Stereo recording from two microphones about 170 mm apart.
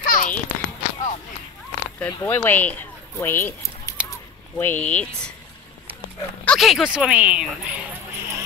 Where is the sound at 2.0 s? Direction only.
10° left (ahead or behind).